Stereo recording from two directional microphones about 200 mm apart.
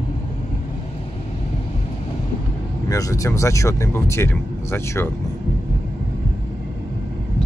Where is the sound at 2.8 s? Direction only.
15° left (ahead or behind).